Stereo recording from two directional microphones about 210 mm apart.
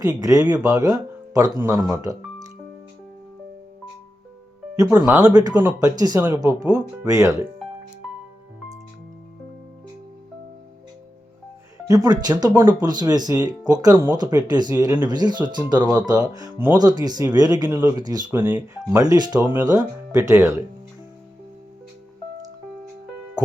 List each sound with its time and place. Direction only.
0.0 s speech: 15° right (ahead or behind)
4.8 s speech: 15° right (ahead or behind)
11.9 s speech: 15° right (ahead or behind)
19.0 s speech: 20° right (ahead or behind)